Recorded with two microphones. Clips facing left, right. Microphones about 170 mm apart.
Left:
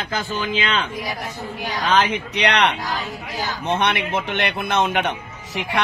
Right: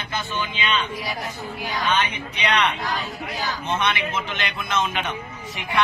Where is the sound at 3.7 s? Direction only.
65° left (ahead or behind).